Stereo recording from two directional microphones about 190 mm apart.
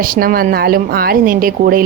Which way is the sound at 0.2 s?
50° right (ahead or behind).